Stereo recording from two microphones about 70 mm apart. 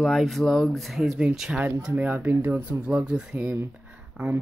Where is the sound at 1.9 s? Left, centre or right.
Right.